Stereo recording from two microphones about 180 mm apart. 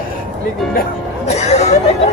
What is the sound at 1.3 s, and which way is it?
Speech, 35° left (ahead or behind).